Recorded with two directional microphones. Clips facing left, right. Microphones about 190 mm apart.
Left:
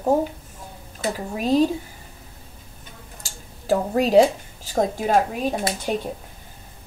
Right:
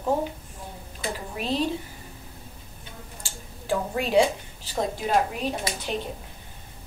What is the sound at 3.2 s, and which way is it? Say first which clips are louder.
Speech: even; 40° left (ahead or behind).